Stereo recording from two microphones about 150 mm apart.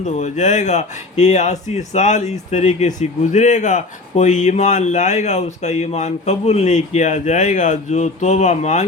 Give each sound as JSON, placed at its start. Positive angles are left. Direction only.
{"t": 0.0, "sound": "speech", "side_deg": 55}